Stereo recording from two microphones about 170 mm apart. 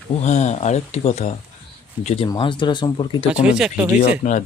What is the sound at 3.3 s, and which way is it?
Speech, 5° right (ahead or behind).